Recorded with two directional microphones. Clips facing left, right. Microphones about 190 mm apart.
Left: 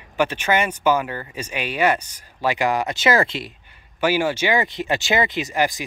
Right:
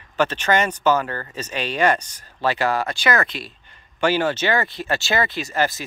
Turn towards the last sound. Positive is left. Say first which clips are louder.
# left 1 dB
turn(degrees=15)  # may be behind; listen again after turning